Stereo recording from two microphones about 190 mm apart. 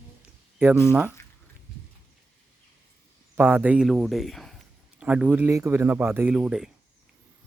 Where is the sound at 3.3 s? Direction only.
10° right (ahead or behind).